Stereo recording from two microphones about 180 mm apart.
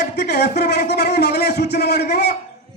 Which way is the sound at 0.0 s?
65° left (ahead or behind).